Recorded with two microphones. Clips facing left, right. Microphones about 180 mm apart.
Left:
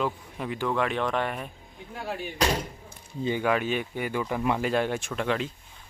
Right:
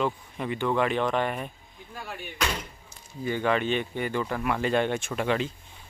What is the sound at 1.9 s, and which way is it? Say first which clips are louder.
Speech: left 5 dB; 30° left (ahead or behind).